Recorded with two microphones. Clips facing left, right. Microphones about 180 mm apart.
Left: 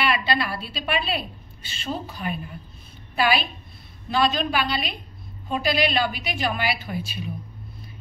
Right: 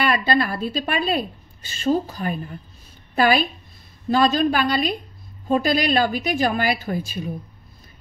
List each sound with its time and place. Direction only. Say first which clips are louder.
0.0 s a woman's voice: right 4 dB; 45° right (ahead or behind)